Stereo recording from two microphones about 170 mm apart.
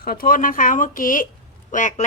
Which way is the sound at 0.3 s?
50° left (ahead or behind).